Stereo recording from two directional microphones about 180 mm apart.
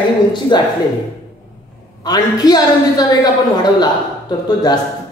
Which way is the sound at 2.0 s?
20° left (ahead or behind).